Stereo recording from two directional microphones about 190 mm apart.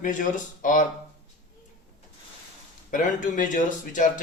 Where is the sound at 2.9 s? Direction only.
40° left (ahead or behind).